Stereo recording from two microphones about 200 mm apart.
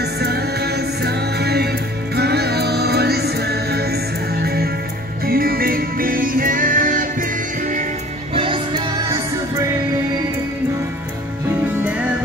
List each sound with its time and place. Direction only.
0.0 s music: 55° right (ahead or behind)
8.4 s music: 25° right (ahead or behind)